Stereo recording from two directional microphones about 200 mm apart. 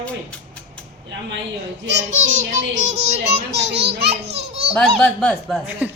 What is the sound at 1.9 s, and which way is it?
Child singing, 35° right (ahead or behind).